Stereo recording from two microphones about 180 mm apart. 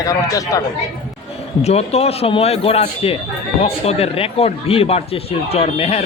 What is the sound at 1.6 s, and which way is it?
Speech, 35° left (ahead or behind).